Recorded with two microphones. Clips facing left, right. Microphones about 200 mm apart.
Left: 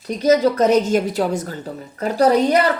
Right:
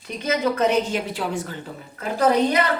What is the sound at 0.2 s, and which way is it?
A woman's voice, 40° left (ahead or behind).